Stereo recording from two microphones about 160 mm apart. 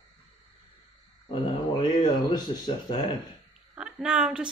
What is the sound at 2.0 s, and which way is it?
Speech, 30° left (ahead or behind).